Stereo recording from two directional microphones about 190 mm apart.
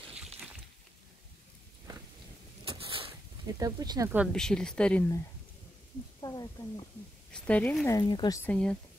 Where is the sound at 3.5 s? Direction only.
20° right (ahead or behind).